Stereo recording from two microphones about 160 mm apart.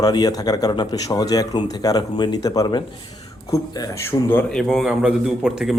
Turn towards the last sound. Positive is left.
turn(degrees=-5)  # may be behind; listen again after turning